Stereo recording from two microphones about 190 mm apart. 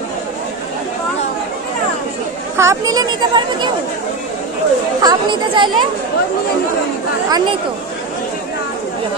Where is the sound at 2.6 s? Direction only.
15° right (ahead or behind).